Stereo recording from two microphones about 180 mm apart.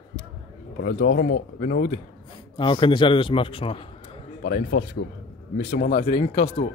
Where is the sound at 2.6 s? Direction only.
25° left (ahead or behind).